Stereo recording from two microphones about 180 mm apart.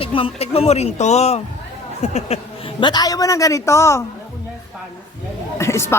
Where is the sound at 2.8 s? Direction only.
20° left (ahead or behind).